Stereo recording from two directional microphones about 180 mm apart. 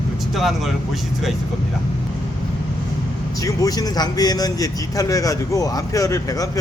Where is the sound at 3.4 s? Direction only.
20° left (ahead or behind).